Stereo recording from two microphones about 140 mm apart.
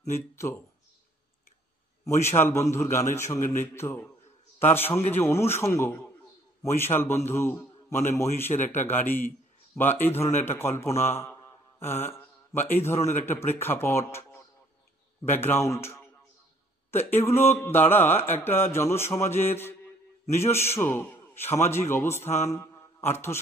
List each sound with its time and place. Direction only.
0.4 s mantra: 15° left (ahead or behind)
2.0 s a man's voice: 20° left (ahead or behind)
4.6 s mantra: 15° left (ahead or behind)
11.8 s speech: 15° left (ahead or behind)
13.2 s mantra: 15° left (ahead or behind)
20.7 s a man's voice: 15° left (ahead or behind)